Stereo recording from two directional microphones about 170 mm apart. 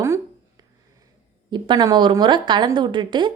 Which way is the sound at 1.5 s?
25° right (ahead or behind).